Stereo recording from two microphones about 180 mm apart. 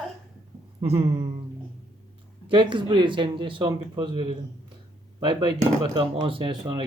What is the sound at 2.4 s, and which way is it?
Speech, 25° right (ahead or behind).